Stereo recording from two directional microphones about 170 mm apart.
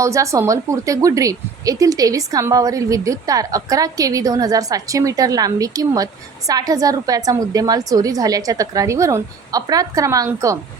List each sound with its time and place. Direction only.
0.0 s speech: 20° right (ahead or behind)